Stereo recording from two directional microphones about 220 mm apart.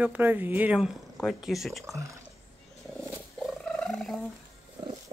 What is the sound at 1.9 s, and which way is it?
Speech, 15° right (ahead or behind).